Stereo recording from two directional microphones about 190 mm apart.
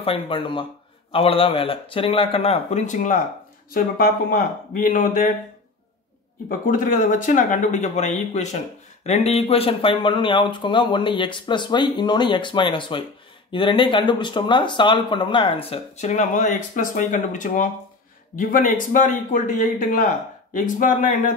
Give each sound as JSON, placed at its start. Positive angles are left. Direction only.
{"t": 0.0, "sound": "speech", "side_deg": 30}
{"t": 6.6, "sound": "speech", "side_deg": 45}
{"t": 20.5, "sound": "speech", "side_deg": 45}